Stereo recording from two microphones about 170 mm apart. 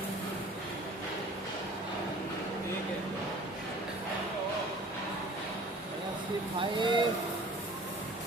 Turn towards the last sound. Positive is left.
turn(degrees=-30)  # may be behind; listen again after turning